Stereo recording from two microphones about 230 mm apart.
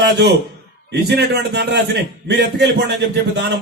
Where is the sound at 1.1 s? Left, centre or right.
Right.